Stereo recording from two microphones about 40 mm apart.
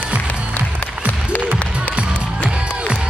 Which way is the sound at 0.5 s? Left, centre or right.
Left.